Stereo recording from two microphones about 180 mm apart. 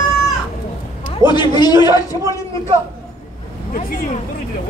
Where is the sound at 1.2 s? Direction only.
25° left (ahead or behind).